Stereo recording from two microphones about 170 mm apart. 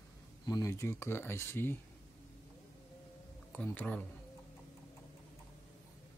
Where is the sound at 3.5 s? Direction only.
10° left (ahead or behind).